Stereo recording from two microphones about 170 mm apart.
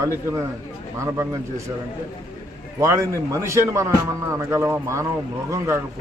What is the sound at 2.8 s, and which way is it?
A man's voice, 15° right (ahead or behind).